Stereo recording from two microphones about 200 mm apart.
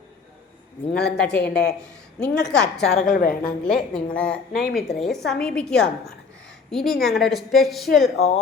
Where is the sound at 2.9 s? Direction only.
45° left (ahead or behind).